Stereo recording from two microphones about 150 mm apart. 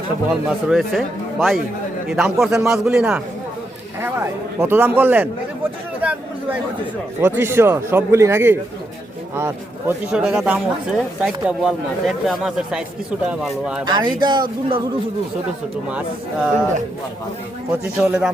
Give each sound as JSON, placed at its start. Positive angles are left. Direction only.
{"t": 0.3, "sound": "speech", "side_deg": 0}
{"t": 4.6, "sound": "speech", "side_deg": -15}
{"t": 6.0, "sound": "chatter", "side_deg": -10}
{"t": 7.2, "sound": "speech", "side_deg": -15}
{"t": 13.8, "sound": "speech", "side_deg": -30}
{"t": 15.9, "sound": "speech", "side_deg": -10}
{"t": 17.7, "sound": "speech", "side_deg": -5}